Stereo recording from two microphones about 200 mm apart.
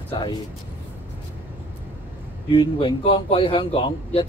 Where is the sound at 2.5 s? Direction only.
25° left (ahead or behind).